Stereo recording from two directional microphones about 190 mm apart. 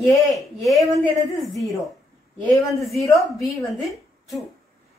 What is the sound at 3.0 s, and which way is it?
Speech, 15° left (ahead or behind).